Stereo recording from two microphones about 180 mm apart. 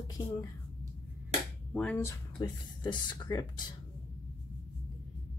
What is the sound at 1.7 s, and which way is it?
Speech, 5° left (ahead or behind).